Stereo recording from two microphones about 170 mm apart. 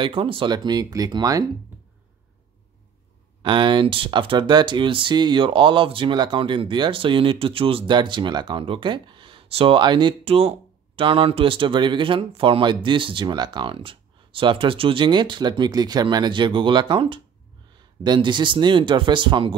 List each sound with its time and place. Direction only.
0.0 s speech: 30° right (ahead or behind)
3.4 s speech: 30° right (ahead or behind)